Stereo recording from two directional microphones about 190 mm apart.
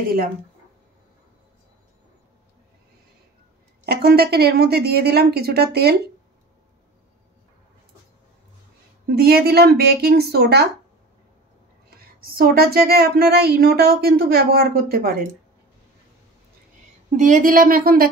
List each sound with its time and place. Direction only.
3.8 s speech: 55° right (ahead or behind)
9.1 s speech: 55° right (ahead or behind)
12.2 s speech: 50° right (ahead or behind)
17.2 s speech: 45° right (ahead or behind)